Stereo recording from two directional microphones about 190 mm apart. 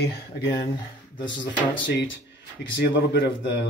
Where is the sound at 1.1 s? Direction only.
25° left (ahead or behind).